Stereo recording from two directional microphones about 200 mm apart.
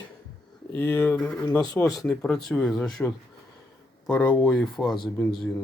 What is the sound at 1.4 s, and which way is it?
Speech, 20° left (ahead or behind).